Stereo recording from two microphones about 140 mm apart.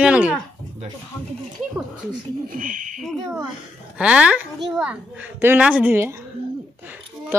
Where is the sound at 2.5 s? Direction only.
70° right (ahead or behind).